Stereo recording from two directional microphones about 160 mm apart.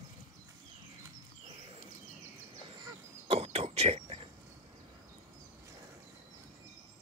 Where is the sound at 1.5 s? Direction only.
35° right (ahead or behind).